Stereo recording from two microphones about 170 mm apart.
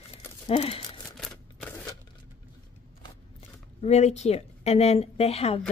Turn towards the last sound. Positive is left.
turn(degrees=35)  # may be behind; listen again after turning